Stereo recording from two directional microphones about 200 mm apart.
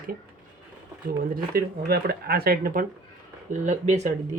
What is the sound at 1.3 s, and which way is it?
Speech, 50° right (ahead or behind).